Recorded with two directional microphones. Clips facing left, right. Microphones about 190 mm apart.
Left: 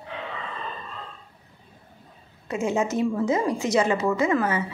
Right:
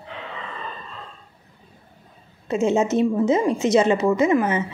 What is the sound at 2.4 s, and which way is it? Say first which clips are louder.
A woman's voice: right 5 dB; 25° right (ahead or behind).